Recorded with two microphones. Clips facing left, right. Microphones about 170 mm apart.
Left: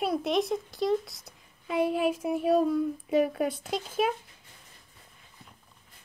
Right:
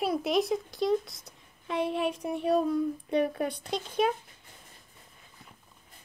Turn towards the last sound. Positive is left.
turn(degrees=5)  # may be behind; listen again after turning